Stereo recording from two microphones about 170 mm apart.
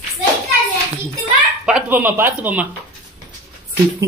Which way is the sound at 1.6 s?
5° right (ahead or behind).